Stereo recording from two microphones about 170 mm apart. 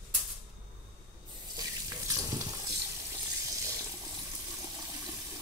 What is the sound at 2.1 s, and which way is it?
Stir, 20° right (ahead or behind).